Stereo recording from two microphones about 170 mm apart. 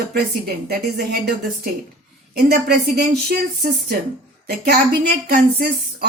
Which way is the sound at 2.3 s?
70° right (ahead or behind).